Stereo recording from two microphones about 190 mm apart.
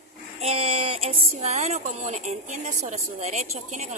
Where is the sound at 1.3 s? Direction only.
35° right (ahead or behind).